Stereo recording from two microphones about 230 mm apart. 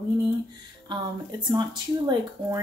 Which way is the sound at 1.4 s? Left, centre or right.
Centre.